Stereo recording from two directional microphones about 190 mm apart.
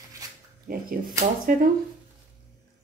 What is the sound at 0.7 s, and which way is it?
Speech, 50° right (ahead or behind).